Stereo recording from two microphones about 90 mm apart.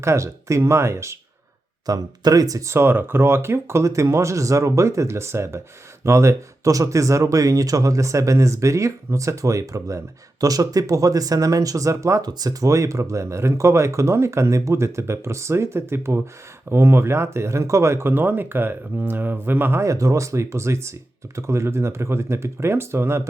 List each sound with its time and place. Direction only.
0.0 s speech: 30° right (ahead or behind)
1.9 s speech: 45° right (ahead or behind)
12.3 s speech: 45° right (ahead or behind); by 23.2 s 30° right (ahead or behind)